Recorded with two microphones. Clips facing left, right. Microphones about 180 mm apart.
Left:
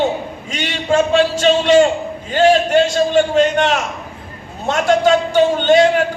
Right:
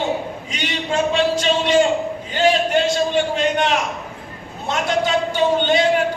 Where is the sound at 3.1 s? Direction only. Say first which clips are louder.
Left 6 dB; 45° left (ahead or behind).